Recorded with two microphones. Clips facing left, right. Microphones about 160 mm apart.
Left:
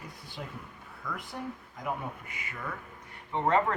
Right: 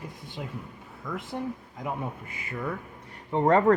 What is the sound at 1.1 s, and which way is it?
Speech, 25° right (ahead or behind).